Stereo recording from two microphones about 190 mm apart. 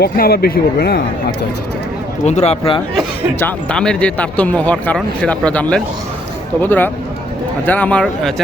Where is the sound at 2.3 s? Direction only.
35° left (ahead or behind).